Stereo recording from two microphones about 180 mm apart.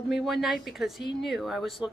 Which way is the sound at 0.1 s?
Centre (ahead or behind).